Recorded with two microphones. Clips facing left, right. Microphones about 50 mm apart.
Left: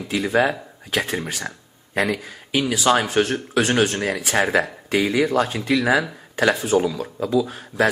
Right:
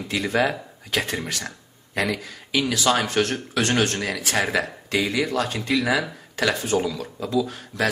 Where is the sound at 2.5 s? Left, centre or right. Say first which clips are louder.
Left 3 dB; centre.